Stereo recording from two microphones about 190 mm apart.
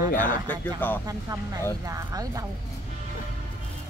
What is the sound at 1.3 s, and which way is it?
Speech, 20° right (ahead or behind).